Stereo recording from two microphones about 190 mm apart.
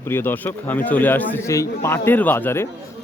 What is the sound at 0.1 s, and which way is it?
A man's voice, 10° left (ahead or behind).